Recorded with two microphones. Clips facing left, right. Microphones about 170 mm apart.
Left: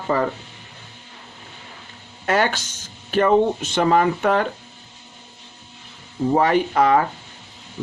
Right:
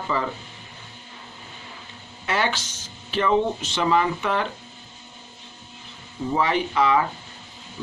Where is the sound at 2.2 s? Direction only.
45° left (ahead or behind).